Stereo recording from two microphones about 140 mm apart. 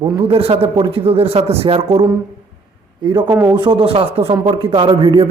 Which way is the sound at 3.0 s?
35° right (ahead or behind).